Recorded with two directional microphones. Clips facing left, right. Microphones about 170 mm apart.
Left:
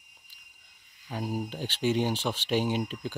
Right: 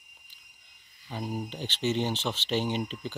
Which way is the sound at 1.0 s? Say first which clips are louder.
Left 2 dB; 10° left (ahead or behind).